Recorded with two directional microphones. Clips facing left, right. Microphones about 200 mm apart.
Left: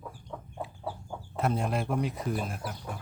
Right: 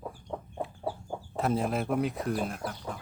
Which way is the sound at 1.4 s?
Centre (ahead or behind).